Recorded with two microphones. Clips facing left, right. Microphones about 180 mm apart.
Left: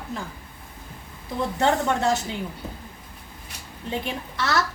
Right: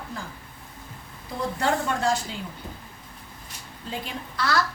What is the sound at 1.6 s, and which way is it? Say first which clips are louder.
Speech: left 4 dB; 20° left (ahead or behind).